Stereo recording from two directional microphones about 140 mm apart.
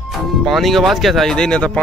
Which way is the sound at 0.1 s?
Centre (ahead or behind).